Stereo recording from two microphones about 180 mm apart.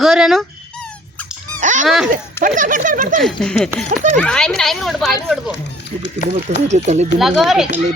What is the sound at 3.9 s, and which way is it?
Speech, 45° right (ahead or behind).